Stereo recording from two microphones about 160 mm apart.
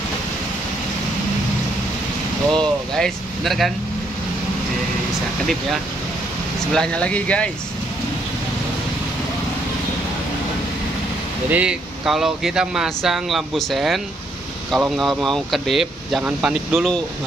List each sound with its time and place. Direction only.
2.5 s vehicle: 5° left (ahead or behind)
6.7 s speech: 5° left (ahead or behind)
11.5 s speech: 5° right (ahead or behind)